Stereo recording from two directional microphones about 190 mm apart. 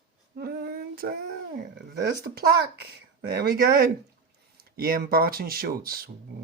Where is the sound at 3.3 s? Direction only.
55° right (ahead or behind).